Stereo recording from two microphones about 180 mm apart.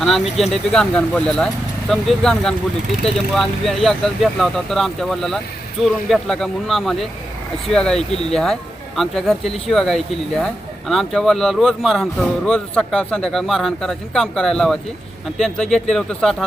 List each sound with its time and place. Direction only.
0.0 s speech: centre (ahead or behind)